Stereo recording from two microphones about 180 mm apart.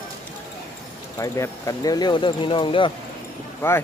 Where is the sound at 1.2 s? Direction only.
20° left (ahead or behind).